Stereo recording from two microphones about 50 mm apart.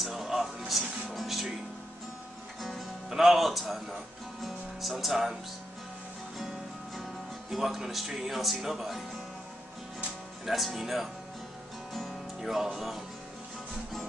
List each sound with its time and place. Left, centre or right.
0.0 s music: centre
2.6 s speech: centre
7.5 s speech: centre
10.4 s speech: centre
12.4 s speech: centre